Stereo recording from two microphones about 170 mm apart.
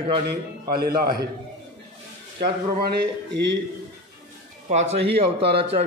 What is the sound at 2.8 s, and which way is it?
Speech, 80° right.